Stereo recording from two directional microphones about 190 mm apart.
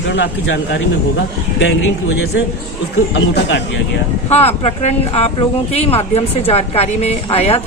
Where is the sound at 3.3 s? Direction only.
65° left (ahead or behind).